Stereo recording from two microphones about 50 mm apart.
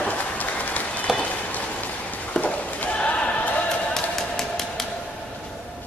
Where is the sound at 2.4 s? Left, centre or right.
Left.